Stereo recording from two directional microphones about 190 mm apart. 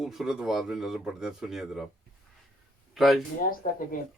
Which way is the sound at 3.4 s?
45° left (ahead or behind).